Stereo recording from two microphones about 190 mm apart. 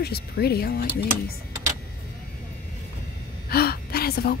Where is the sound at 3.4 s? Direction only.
55° left (ahead or behind).